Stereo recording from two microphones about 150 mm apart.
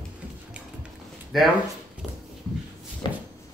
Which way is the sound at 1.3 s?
Centre (ahead or behind).